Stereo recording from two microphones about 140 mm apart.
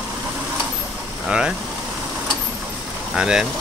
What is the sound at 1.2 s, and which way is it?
Speech, 5° right (ahead or behind).